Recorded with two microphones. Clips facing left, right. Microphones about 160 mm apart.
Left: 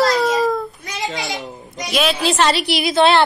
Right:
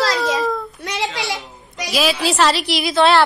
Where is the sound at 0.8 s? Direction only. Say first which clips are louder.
Right 4 dB; 90° right.